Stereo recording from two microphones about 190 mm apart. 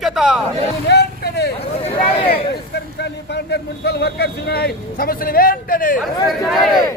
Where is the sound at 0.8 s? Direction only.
60° left (ahead or behind).